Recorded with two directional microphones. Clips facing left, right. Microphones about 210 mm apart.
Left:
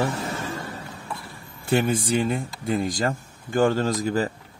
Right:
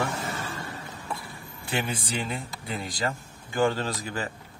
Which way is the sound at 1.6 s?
45° left (ahead or behind).